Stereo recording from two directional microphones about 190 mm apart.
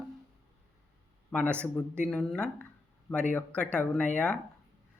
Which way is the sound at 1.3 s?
5° left (ahead or behind).